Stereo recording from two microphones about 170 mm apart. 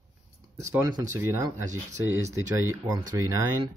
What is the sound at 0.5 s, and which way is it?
Speech, 15° right (ahead or behind).